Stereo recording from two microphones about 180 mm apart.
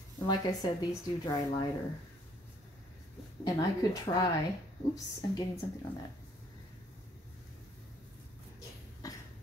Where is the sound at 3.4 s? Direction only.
20° left (ahead or behind).